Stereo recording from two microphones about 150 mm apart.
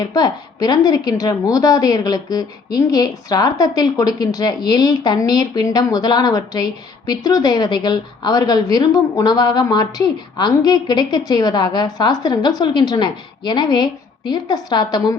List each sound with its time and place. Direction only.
0.0 s a woman's voice: 25° left (ahead or behind)